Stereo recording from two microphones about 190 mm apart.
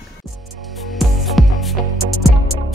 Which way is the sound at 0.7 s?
Centre (ahead or behind).